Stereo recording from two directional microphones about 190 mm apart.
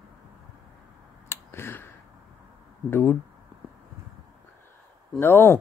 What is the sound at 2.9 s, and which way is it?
Speech, 10° left (ahead or behind).